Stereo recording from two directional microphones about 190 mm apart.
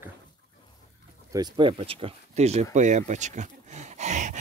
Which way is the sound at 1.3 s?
25° right (ahead or behind).